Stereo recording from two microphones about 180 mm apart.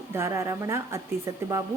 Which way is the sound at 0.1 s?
15° right (ahead or behind).